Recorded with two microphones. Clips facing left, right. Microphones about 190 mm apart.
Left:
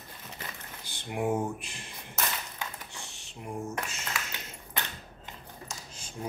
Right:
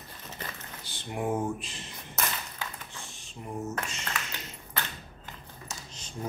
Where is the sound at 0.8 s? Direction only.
15° left (ahead or behind).